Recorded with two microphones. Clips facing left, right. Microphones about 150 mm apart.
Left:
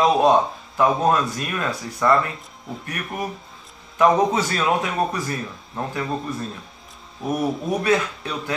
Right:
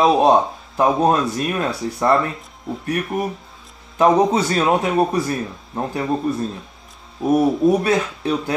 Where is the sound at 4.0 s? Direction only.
30° right (ahead or behind).